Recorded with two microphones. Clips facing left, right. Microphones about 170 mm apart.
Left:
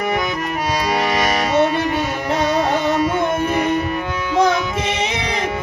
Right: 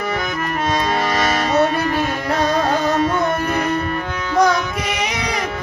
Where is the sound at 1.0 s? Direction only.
15° left (ahead or behind).